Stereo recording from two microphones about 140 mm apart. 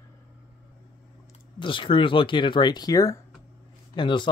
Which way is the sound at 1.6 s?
35° left (ahead or behind).